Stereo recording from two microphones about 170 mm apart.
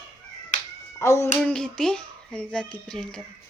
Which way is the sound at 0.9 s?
15° left (ahead or behind).